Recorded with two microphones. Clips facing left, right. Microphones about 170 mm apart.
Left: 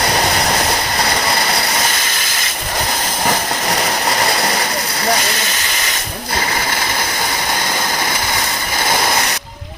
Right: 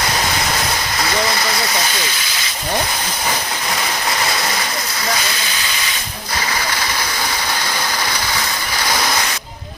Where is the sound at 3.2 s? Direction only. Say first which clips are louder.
Left 6 dB; 45° left (ahead or behind).